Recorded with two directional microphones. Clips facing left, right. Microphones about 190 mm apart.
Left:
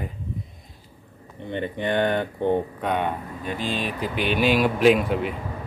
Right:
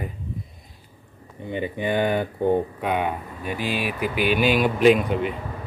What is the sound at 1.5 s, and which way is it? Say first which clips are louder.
Speech: right 1 dB; 5° right (ahead or behind).